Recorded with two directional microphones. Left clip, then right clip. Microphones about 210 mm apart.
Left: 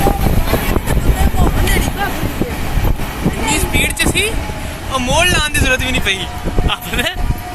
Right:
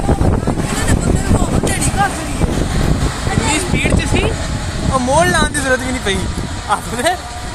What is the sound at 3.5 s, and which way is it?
Vehicle, 35° right (ahead or behind).